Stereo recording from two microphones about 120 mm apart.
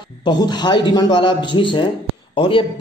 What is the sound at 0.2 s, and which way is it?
Speech, 35° left (ahead or behind).